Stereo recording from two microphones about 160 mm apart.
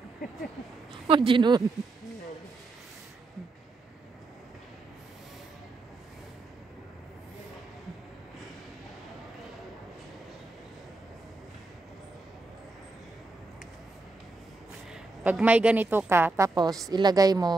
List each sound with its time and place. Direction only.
1.0 s speech: 35° right (ahead or behind)
15.2 s a woman's voice: 10° right (ahead or behind); by 17.6 s 25° right (ahead or behind)